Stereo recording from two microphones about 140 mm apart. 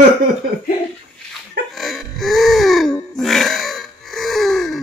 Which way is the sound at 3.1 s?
Centre (ahead or behind).